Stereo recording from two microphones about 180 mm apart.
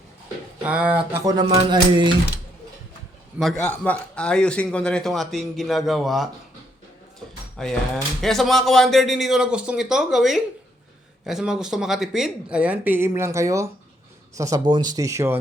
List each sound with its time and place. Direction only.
0.6 s speech: 10° right (ahead or behind); by 2.1 s 25° right (ahead or behind)
3.3 s a man's voice: centre (ahead or behind)
7.6 s a man's voice: 5° left (ahead or behind); by 15.4 s 15° right (ahead or behind)